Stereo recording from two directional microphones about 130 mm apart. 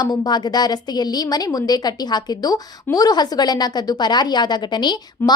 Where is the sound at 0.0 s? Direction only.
30° left (ahead or behind).